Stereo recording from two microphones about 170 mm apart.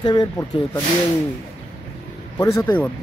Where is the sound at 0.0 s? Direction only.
25° left (ahead or behind).